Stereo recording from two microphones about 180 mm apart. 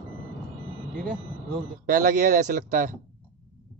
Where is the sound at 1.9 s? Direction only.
50° right (ahead or behind).